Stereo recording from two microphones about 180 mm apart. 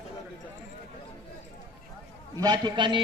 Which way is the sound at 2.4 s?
25° right (ahead or behind).